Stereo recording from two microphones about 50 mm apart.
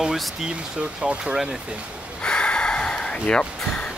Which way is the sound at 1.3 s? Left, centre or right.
Centre.